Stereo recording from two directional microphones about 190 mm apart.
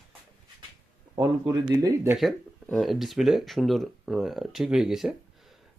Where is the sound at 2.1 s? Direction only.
Centre (ahead or behind).